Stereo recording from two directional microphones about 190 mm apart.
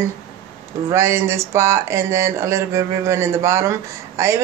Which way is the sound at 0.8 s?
15° right (ahead or behind).